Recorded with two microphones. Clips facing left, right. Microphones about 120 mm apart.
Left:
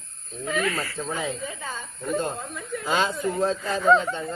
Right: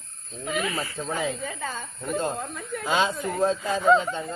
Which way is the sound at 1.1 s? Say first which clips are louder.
Right 4 dB; 55° right (ahead or behind).